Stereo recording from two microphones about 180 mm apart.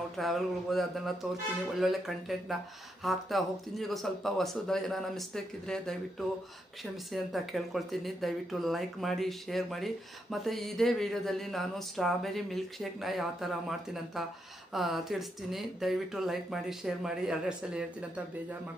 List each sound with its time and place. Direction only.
0.2 s speech: centre (ahead or behind)